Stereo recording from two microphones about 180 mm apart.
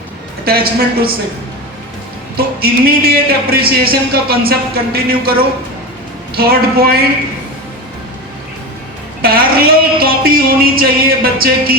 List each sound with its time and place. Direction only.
0.4 s speech: 55° right (ahead or behind)
2.3 s speech: 60° right (ahead or behind)
6.3 s speech: 60° right (ahead or behind)
9.2 s speech: 55° right (ahead or behind)